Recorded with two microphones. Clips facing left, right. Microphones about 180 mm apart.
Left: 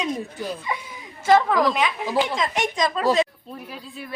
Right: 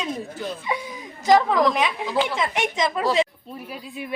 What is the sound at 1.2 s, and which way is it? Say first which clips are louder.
Speech: even; 15° right (ahead or behind).